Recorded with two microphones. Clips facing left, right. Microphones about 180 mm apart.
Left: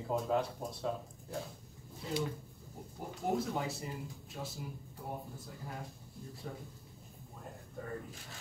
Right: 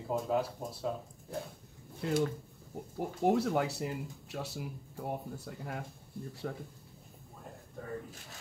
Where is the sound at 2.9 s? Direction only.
70° right (ahead or behind).